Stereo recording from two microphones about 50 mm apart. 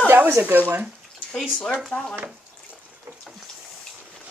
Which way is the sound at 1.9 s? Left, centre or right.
Left.